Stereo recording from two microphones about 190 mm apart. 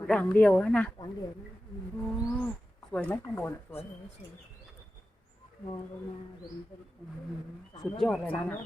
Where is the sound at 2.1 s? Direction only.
5° left (ahead or behind).